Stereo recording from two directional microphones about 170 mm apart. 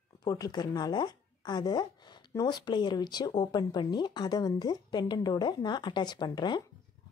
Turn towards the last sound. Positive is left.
turn(degrees=25)  # may be behind; listen again after turning